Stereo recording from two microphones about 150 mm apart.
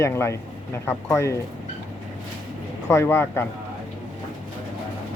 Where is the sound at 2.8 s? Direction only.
20° left (ahead or behind).